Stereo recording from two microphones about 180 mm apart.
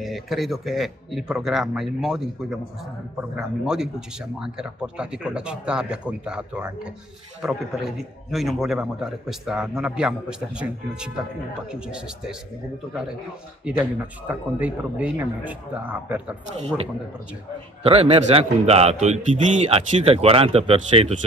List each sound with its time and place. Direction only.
0.0 s a man's voice: centre (ahead or behind)
13.7 s a man's voice: 10° right (ahead or behind)
16.5 s a man's voice: 35° right (ahead or behind)